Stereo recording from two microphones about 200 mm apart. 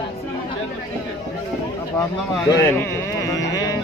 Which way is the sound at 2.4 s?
15° left (ahead or behind).